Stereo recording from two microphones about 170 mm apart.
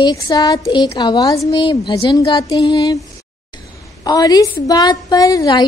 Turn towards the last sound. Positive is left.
turn(degrees=20)  # may be behind; listen again after turning